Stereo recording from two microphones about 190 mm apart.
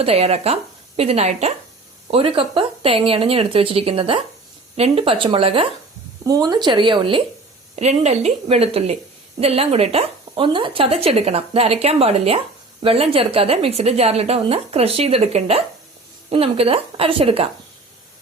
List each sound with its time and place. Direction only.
0.0 s a woman's voice: 30° right (ahead or behind)
7.8 s speech: 35° right (ahead or behind)